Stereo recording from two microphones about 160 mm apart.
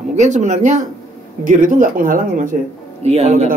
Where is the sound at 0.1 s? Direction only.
45° right (ahead or behind).